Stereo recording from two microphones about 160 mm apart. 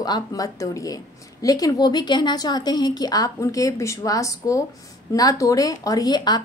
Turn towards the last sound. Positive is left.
turn(degrees=25)  # may be behind; listen again after turning